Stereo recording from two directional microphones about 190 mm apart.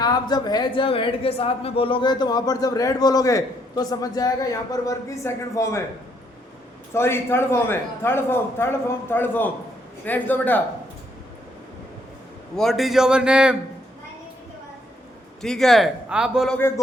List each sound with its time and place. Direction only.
0.0 s a man's voice: 20° left (ahead or behind)
6.9 s a man's voice: 15° left (ahead or behind)
12.5 s speech: centre (ahead or behind)
15.4 s speech: centre (ahead or behind)
16.6 s a man's voice: 15° left (ahead or behind)